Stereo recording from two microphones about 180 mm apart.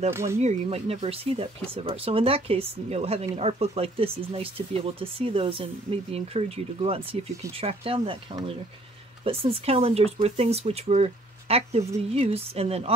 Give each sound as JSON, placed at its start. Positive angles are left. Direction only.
{"t": 0.1, "sound": "speech", "side_deg": -15}
{"t": 0.4, "sound": "speech", "side_deg": -35}
{"t": 9.2, "sound": "speech", "side_deg": -30}